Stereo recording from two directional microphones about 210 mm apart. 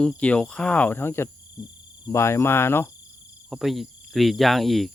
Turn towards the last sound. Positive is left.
turn(degrees=0)  # may be behind; listen again after turning